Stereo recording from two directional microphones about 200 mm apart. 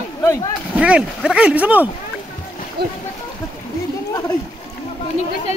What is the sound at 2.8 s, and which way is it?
Speech, 55° right (ahead or behind).